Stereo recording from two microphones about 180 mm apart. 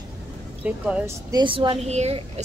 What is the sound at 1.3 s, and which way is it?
Speech, 25° right (ahead or behind).